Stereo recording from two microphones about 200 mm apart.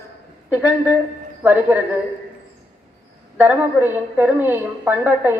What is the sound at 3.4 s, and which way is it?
A woman's voice, 10° right (ahead or behind).